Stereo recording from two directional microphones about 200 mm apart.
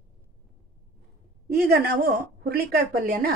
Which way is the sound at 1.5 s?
50° right (ahead or behind).